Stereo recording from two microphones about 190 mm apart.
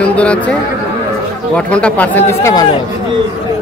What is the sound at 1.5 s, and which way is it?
Speech, 5° left (ahead or behind).